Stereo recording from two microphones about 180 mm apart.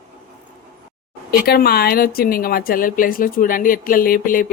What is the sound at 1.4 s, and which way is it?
A woman's voice, 60° left (ahead or behind).